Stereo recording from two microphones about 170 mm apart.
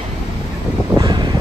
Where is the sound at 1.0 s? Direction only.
25° right (ahead or behind).